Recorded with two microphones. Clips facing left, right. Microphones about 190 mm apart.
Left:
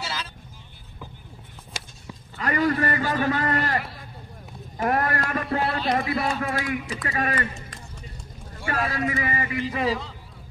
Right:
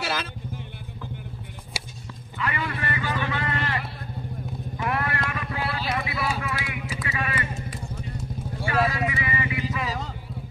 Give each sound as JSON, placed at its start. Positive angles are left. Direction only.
{"t": 0.0, "sound": "vehicle", "side_deg": -65}
{"t": 1.7, "sound": "horse", "side_deg": -10}
{"t": 2.3, "sound": "a sound", "side_deg": 40}
{"t": 6.4, "sound": "speech", "side_deg": 45}
{"t": 8.6, "sound": "speech", "side_deg": 45}